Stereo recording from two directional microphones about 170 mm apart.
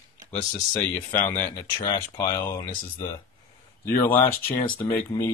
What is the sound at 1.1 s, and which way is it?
Speech, 10° left (ahead or behind).